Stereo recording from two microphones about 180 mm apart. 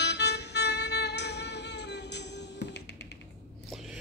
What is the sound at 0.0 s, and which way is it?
Music, 70° left (ahead or behind).